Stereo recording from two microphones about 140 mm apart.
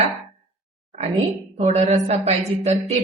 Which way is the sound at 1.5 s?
55° right (ahead or behind).